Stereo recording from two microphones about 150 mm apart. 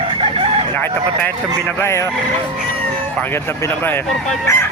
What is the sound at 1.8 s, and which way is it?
Speech, 20° left (ahead or behind).